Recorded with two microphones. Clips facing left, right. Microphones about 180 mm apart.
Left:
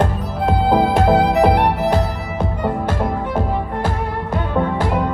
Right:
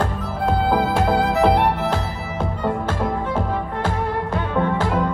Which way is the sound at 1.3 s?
15° left (ahead or behind).